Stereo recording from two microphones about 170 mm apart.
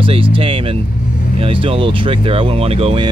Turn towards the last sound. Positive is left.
turn(degrees=-35)  # may be behind; listen again after turning